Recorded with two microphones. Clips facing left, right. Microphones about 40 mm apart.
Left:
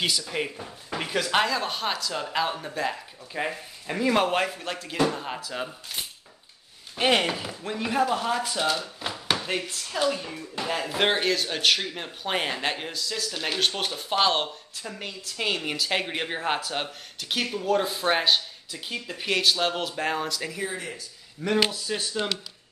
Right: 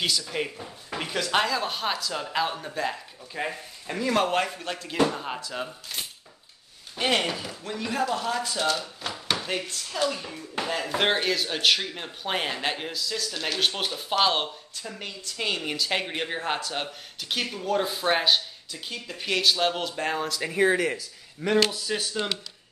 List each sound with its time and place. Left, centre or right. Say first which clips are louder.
0.2 s speech: even; centre
7.0 s speech: left 2 dB; centre
20.7 s speech: right 9 dB; right
21.4 s speech: right 1 dB; centre
21.8 s speech: even; centre